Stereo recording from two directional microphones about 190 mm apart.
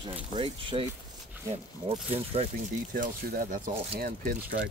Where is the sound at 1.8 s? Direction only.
30° right (ahead or behind).